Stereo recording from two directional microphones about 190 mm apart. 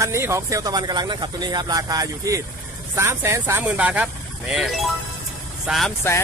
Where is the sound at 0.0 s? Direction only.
15° right (ahead or behind); by 5.9 s centre (ahead or behind).